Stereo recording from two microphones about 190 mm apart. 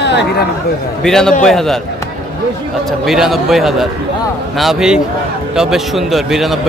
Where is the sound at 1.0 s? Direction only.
5° left (ahead or behind).